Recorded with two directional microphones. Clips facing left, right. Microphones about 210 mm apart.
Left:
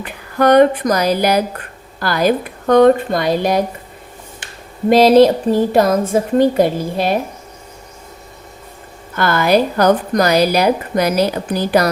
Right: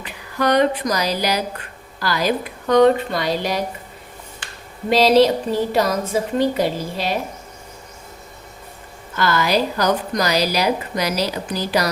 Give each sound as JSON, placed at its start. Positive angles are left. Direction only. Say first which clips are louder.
{"t": 0.0, "sound": "speech", "louder": "left 6 dB", "side_deg": 50}
{"t": 4.9, "sound": "a sound", "louder": "left 5 dB", "side_deg": 50}
{"t": 9.1, "sound": "a woman's voice", "louder": "left 5 dB", "side_deg": 55}